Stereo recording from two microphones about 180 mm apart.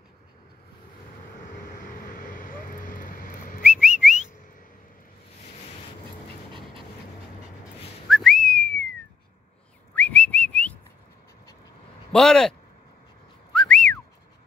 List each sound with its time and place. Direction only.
2.0 s a sound: 45° left (ahead or behind)
4.0 s whistling: 5° right (ahead or behind)
8.1 s whistling: centre (ahead or behind)
9.9 s whistling: 10° left (ahead or behind)
12.1 s speech: 5° left (ahead or behind)
13.5 s whistling: 5° left (ahead or behind)